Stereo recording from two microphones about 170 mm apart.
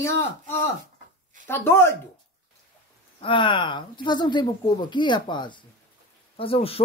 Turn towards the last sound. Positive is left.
turn(degrees=35)  # may be behind; listen again after turning